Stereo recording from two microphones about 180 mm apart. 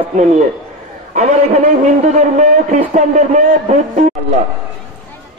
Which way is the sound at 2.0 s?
40° right (ahead or behind).